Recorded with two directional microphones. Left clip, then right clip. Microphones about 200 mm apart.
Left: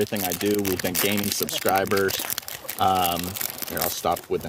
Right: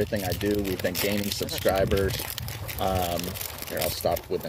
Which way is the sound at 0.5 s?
25° left (ahead or behind).